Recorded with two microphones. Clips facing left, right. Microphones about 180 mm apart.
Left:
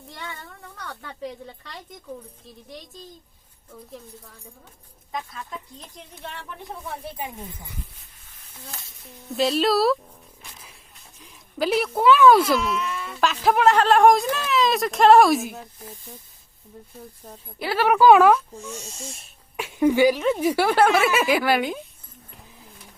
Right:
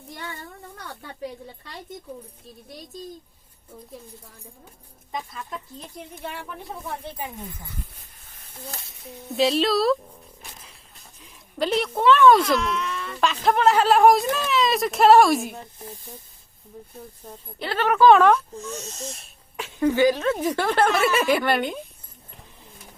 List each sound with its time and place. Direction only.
0.9 s speech: 10° right (ahead or behind)
5.1 s speech: centre (ahead or behind)
7.2 s speech: 15° left (ahead or behind)
9.0 s speech: centre (ahead or behind)
11.2 s speech: centre (ahead or behind)
17.2 s speech: 5° left (ahead or behind)